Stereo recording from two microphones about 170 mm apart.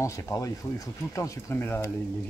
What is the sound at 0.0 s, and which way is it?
Speech, 20° left (ahead or behind).